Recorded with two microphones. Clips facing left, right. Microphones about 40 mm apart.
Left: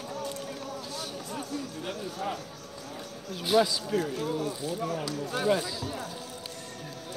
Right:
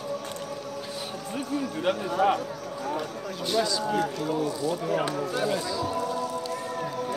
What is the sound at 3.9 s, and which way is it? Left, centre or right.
Speech, right.